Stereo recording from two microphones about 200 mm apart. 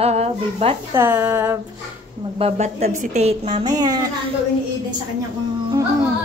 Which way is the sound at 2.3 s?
30° right (ahead or behind).